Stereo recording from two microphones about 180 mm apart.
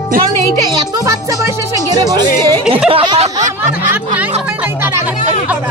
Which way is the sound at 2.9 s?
30° right (ahead or behind).